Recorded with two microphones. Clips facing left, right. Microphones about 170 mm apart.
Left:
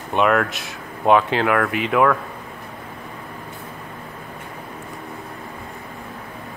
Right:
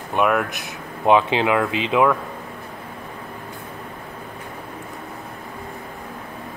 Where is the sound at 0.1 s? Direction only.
5° right (ahead or behind).